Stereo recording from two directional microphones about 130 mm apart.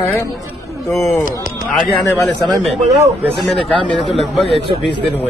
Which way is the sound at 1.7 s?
10° left (ahead or behind).